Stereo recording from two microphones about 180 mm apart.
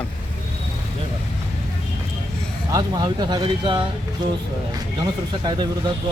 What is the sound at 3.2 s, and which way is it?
Speech, 25° right (ahead or behind).